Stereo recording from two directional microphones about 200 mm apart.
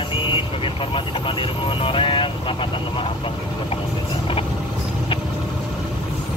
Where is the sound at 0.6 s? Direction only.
25° left (ahead or behind).